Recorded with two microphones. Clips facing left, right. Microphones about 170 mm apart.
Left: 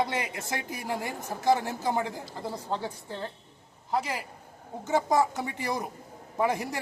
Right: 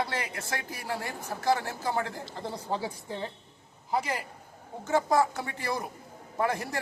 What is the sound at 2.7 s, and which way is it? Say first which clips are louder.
Speech: even; 10° right (ahead or behind).